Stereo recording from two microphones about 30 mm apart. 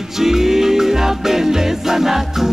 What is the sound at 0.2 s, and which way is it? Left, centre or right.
Music, centre.